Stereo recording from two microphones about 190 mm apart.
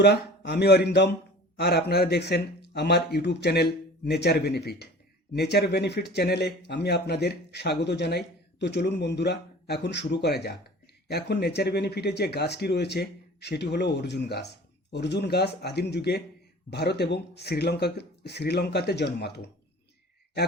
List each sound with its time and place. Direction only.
0.0 s speech: 60° left (ahead or behind)